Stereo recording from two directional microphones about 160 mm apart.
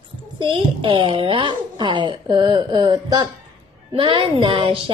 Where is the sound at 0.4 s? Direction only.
30° right (ahead or behind).